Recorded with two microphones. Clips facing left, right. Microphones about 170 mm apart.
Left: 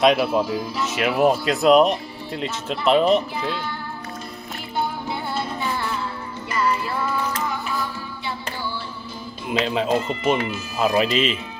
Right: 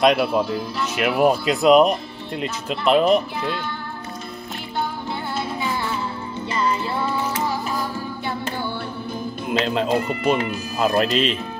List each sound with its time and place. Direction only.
0.0 s speech: centre (ahead or behind)
6.5 s music: 25° right (ahead or behind)
9.5 s speech: centre (ahead or behind)
10.3 s speech: 40° right (ahead or behind)
10.8 s speech: centre (ahead or behind)